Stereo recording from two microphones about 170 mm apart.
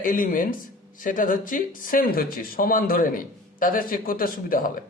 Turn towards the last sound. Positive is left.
turn(degrees=55)  # may be behind; listen again after turning